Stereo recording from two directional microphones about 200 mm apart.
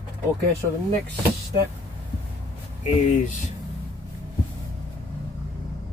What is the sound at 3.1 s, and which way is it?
Speech, 40° left (ahead or behind).